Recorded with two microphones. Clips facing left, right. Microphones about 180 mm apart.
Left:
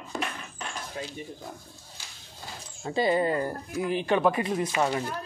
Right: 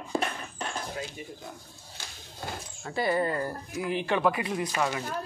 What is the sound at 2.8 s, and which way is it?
Speech, 20° left (ahead or behind).